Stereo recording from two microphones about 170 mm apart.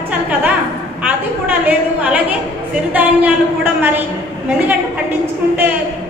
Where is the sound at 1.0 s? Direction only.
10° right (ahead or behind).